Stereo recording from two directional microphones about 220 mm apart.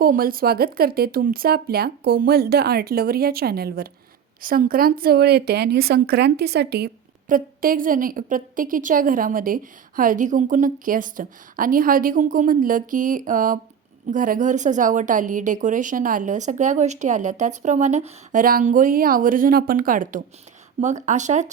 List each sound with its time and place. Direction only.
0.0 s a woman's voice: 40° right (ahead or behind)